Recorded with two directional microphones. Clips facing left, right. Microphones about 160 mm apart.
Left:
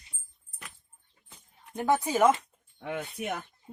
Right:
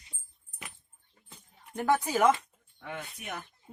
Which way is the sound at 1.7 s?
20° left (ahead or behind).